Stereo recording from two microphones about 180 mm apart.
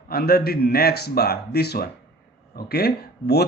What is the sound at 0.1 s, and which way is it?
Speech, 60° left (ahead or behind).